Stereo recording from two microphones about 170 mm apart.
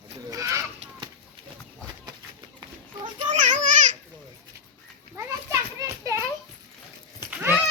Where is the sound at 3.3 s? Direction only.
45° right (ahead or behind).